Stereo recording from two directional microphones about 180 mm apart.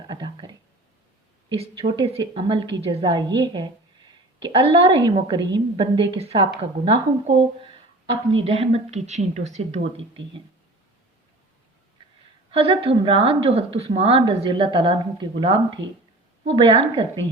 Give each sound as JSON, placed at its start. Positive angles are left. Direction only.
{"t": 0.1, "sound": "a woman's voice", "side_deg": -25}
{"t": 7.6, "sound": "a sound", "side_deg": -30}
{"t": 8.4, "sound": "a woman's voice", "side_deg": -35}
{"t": 12.5, "sound": "a woman's voice", "side_deg": -30}